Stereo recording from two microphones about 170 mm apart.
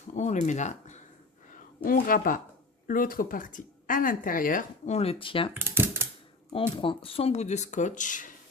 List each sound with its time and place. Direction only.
0.1 s speech: 45° left (ahead or behind)
1.5 s speech: 55° left (ahead or behind)
4.9 s speech: 35° left (ahead or behind)
5.5 s typing: 15° right (ahead or behind)
6.7 s speech: 30° left (ahead or behind); by 8.3 s 50° left (ahead or behind)